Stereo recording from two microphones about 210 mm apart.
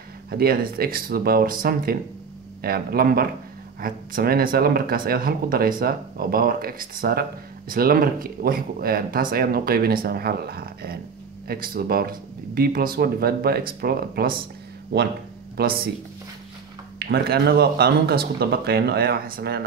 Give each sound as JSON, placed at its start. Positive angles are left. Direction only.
{"t": 0.3, "sound": "speech", "side_deg": -45}
{"t": 15.5, "sound": "speech", "side_deg": -45}
{"t": 17.0, "sound": "speech", "side_deg": -50}